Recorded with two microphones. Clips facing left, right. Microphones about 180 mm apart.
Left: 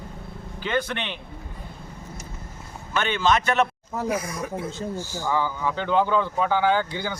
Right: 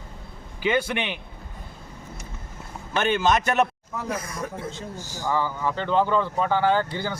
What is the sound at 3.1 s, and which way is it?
Speech, 45° right (ahead or behind).